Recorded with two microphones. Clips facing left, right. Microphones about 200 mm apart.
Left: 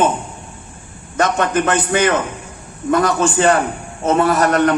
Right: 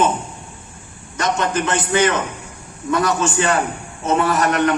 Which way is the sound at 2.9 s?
50° left (ahead or behind).